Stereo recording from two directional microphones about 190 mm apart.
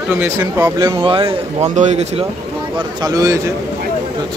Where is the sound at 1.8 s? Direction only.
40° right (ahead or behind).